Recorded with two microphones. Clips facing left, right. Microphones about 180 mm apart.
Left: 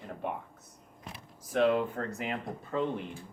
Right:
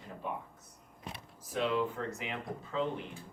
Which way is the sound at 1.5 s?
55° left (ahead or behind).